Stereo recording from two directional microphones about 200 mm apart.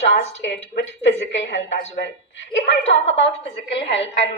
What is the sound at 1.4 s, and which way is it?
A woman's voice, 65° left (ahead or behind).